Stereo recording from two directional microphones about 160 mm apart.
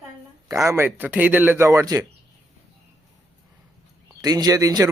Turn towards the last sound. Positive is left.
turn(degrees=-20)  # may be behind; listen again after turning